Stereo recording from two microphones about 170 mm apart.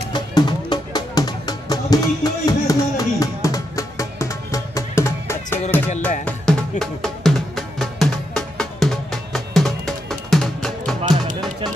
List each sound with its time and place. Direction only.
0.1 s music: 25° left (ahead or behind); by 11.0 s centre (ahead or behind)